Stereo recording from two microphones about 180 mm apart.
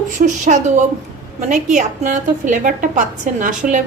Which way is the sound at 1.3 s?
45° right (ahead or behind).